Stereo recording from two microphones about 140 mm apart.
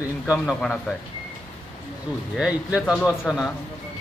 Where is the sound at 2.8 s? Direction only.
Centre (ahead or behind).